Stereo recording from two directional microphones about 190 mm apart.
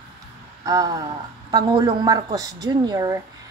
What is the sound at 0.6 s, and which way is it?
A woman's voice, 20° right (ahead or behind).